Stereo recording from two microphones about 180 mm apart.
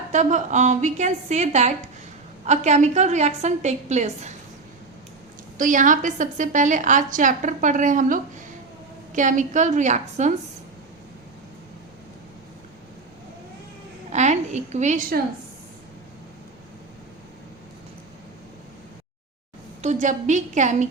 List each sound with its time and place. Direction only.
0.1 s a woman's voice: 40° right (ahead or behind)
5.5 s a woman's voice: 45° right (ahead or behind)
14.1 s a sound: 40° right (ahead or behind)
19.8 s a woman's voice: 40° right (ahead or behind)